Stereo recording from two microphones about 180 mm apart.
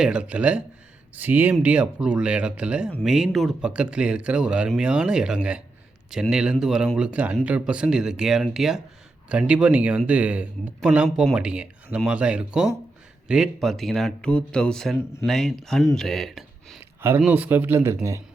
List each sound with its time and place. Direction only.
0.0 s speech: 5° right (ahead or behind)
16.0 s a sound: centre (ahead or behind)
17.0 s speech: 10° right (ahead or behind)